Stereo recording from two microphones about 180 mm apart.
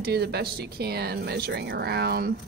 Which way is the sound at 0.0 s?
65° right (ahead or behind).